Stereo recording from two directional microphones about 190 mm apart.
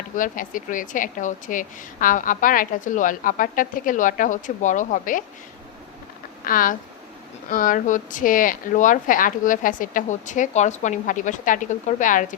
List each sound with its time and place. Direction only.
0.2 s a woman's voice: 45° left (ahead or behind)
6.4 s a woman's voice: 45° left (ahead or behind)